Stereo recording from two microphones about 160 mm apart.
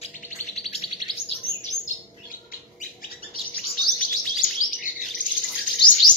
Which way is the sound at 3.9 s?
Centre (ahead or behind).